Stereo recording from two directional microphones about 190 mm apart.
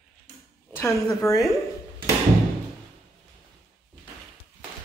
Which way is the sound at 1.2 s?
15° left (ahead or behind).